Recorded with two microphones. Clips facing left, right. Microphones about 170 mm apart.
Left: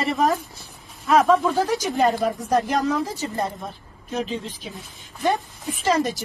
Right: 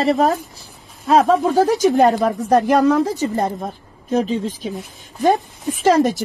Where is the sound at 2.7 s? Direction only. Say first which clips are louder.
Right 8 dB; 70° right (ahead or behind).